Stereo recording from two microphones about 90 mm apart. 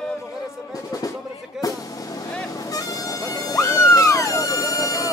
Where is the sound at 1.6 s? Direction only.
40° left (ahead or behind).